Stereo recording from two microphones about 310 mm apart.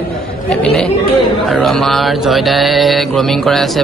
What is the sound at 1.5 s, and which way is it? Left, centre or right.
Mantra, centre.